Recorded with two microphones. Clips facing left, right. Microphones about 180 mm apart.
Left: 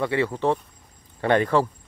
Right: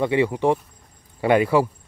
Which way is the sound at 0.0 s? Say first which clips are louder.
Right 3 dB; 15° right (ahead or behind).